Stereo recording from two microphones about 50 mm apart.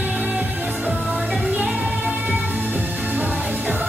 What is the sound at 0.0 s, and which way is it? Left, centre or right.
Music, right.